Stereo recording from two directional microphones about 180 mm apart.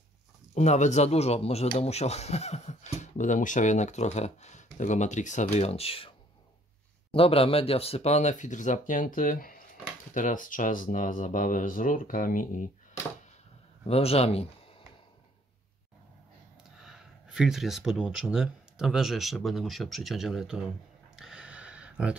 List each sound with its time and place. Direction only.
0.6 s speech: 40° left (ahead or behind)
13.8 s speech: 35° left (ahead or behind)
16.8 s speech: 5° right (ahead or behind)
21.2 s a sound: 5° right (ahead or behind)